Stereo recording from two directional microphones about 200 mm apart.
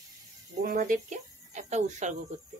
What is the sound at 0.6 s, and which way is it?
Speech, 45° right (ahead or behind).